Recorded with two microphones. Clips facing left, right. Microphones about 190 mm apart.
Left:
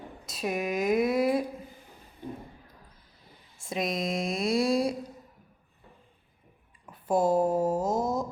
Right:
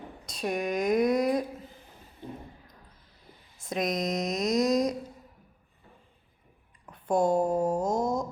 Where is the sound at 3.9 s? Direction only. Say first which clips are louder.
Right 1 dB; 25° left (ahead or behind).